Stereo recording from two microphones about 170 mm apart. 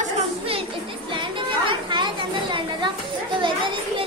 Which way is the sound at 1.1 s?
30° right (ahead or behind).